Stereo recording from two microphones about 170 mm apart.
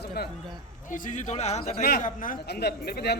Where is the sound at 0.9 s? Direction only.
50° left (ahead or behind).